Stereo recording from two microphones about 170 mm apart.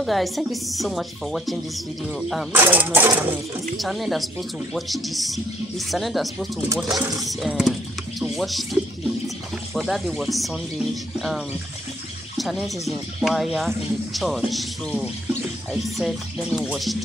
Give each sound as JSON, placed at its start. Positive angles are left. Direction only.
{"t": 0.0, "sound": "speech", "side_deg": 0}
{"t": 2.5, "sound": "speech", "side_deg": -10}
{"t": 3.7, "sound": "speech", "side_deg": 0}
{"t": 6.9, "sound": "music", "side_deg": -20}
{"t": 7.2, "sound": "speech", "side_deg": 0}